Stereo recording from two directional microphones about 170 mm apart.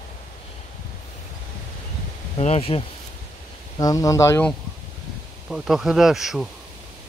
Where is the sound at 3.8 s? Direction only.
20° left (ahead or behind).